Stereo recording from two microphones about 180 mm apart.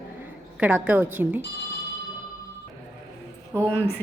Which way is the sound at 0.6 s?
10° right (ahead or behind).